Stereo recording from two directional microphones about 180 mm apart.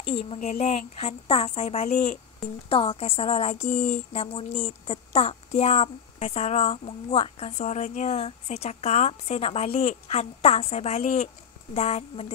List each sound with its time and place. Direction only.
0.0 s a woman's voice: 30° left (ahead or behind)